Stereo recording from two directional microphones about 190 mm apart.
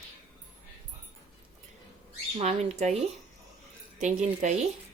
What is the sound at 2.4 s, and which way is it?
Speech, 35° right (ahead or behind).